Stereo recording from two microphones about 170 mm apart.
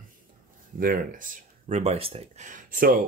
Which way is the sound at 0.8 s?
50° right (ahead or behind).